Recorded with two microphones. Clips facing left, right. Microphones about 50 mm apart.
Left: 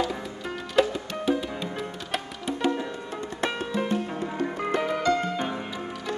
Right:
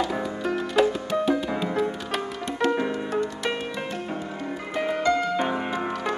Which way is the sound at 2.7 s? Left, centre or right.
Right.